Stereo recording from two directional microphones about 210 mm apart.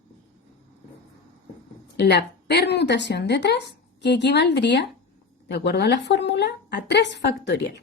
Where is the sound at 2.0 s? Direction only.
55° left (ahead or behind).